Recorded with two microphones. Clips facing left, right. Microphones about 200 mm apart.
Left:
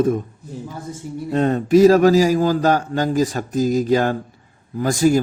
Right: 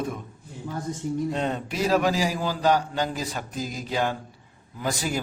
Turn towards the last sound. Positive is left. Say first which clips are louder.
# left 12 dB
turn(degrees=45)  # may be behind; listen again after turning